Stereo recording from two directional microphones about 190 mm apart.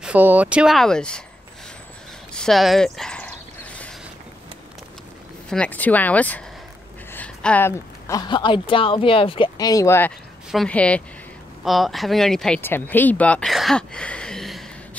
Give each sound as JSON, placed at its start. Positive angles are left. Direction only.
{"t": 0.0, "sound": "speech", "side_deg": -10}
{"t": 2.3, "sound": "a sound", "side_deg": 0}
{"t": 5.5, "sound": "speech", "side_deg": 5}